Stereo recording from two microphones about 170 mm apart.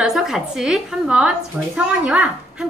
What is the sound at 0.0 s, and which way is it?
A woman's voice, 5° right (ahead or behind).